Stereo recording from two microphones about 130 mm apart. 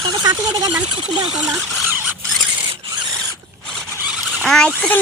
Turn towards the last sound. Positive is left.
turn(degrees=5)  # may be behind; listen again after turning